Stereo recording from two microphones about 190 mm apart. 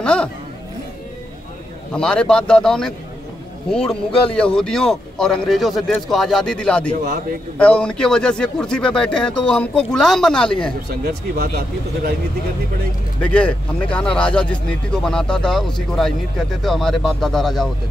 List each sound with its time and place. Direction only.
0.0 s a sound: 5° left (ahead or behind)
1.9 s speech: 5° left (ahead or behind)
10.9 s speech: 55° right (ahead or behind)
13.2 s speech: 5° left (ahead or behind)